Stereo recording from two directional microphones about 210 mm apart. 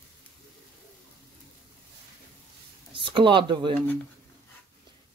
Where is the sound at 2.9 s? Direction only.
25° right (ahead or behind).